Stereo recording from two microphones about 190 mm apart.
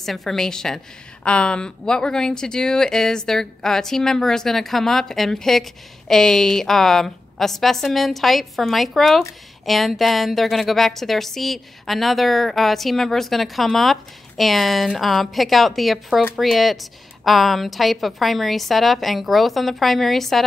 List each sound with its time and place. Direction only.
0.0 s speech: centre (ahead or behind)